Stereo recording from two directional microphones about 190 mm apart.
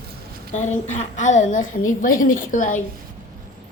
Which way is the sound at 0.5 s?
40° left (ahead or behind).